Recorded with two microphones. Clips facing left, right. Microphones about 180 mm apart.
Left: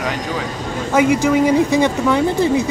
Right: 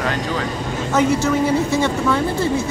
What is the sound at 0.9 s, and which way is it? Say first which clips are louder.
Speech: left 3 dB; 10° left (ahead or behind).